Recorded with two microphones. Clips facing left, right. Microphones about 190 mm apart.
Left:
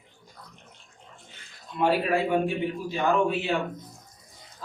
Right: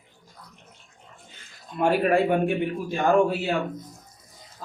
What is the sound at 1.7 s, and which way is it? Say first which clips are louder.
A man's voice: right 3 dB; 50° right (ahead or behind).